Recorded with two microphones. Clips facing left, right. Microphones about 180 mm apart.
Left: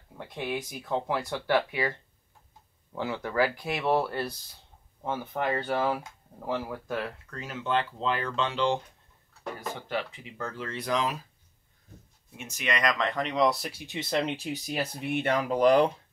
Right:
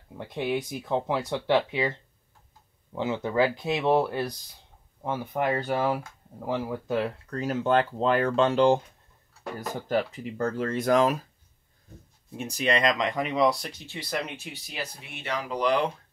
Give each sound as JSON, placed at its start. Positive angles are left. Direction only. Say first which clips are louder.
{"t": 0.3, "sound": "speech", "louder": "right 5 dB", "side_deg": -20}
{"t": 7.2, "sound": "speech", "louder": "right 7 dB", "side_deg": -40}
{"t": 9.4, "sound": "a sound", "louder": "right 2 dB", "side_deg": -5}
{"t": 9.8, "sound": "speech", "louder": "right 6 dB", "side_deg": -45}
{"t": 12.4, "sound": "speech", "louder": "right 5 dB", "side_deg": -35}
{"t": 12.9, "sound": "speech", "louder": "right 2 dB", "side_deg": -15}
{"t": 13.9, "sound": "speech", "louder": "left 4 dB", "side_deg": 30}
{"t": 14.7, "sound": "speech", "louder": "left 7 dB", "side_deg": 50}